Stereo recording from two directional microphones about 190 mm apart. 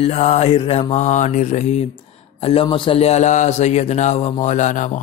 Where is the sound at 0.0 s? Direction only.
35° left (ahead or behind).